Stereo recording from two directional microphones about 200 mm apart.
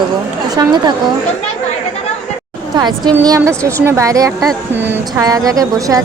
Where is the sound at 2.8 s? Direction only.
20° right (ahead or behind).